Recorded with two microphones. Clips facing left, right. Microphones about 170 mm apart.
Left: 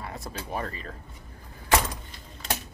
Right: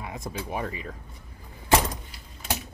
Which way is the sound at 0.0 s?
15° right (ahead or behind).